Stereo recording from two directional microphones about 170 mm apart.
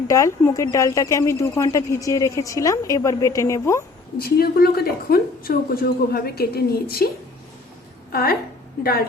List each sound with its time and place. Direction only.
0.1 s speech: 20° left (ahead or behind)
4.2 s speech: 65° left (ahead or behind)
8.1 s speech: 60° left (ahead or behind)